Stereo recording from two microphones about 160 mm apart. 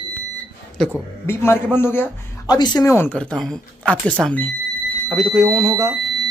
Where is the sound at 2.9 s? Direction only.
10° left (ahead or behind).